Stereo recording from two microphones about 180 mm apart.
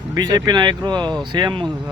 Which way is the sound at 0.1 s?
20° right (ahead or behind).